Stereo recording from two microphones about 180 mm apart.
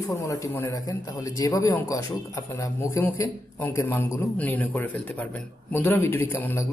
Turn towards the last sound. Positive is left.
turn(degrees=10)  # may be behind; listen again after turning